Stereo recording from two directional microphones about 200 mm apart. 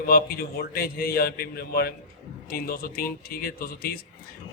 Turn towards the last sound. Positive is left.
turn(degrees=50)  # may be behind; listen again after turning